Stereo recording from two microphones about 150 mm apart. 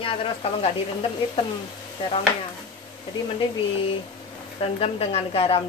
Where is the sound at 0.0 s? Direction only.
40° left (ahead or behind).